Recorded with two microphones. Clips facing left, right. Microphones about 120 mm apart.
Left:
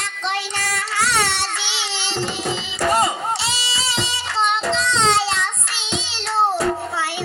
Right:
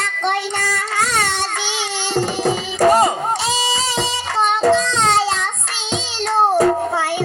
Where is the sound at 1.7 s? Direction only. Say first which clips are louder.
Right 6 dB; 45° right (ahead or behind).